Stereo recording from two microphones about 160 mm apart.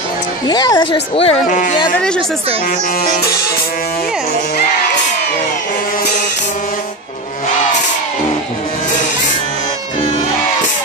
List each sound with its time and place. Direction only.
0.5 s speech: 25° left (ahead or behind)
1.5 s speech: 50° left (ahead or behind)